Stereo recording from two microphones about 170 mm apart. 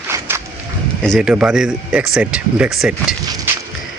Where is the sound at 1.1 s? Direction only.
5° right (ahead or behind).